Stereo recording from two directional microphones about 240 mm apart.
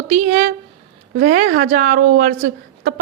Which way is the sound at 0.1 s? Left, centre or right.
Right.